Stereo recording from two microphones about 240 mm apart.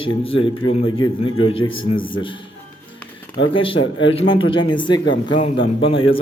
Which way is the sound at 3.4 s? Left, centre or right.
Left.